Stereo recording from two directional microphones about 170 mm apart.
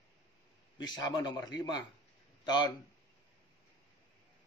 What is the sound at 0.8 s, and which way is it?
Speech, 25° left (ahead or behind).